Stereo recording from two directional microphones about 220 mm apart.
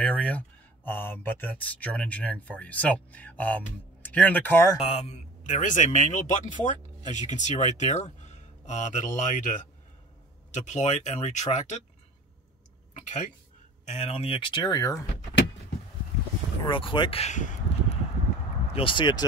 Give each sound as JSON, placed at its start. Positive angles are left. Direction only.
{"t": 0.0, "sound": "speech", "side_deg": 5}
{"t": 4.7, "sound": "a man's voice", "side_deg": 25}
{"t": 12.9, "sound": "speech", "side_deg": 35}
{"t": 16.6, "sound": "speech", "side_deg": 20}